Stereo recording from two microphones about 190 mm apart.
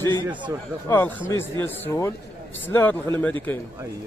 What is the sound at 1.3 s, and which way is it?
A man's voice, 15° left (ahead or behind).